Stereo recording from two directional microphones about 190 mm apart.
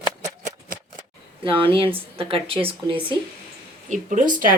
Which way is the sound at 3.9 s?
40° right (ahead or behind).